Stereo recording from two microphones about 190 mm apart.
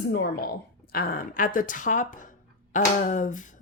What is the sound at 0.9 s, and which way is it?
A woman's voice, 50° left (ahead or behind).